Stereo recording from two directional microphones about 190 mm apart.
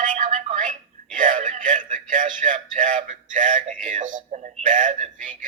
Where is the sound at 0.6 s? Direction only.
45° right (ahead or behind).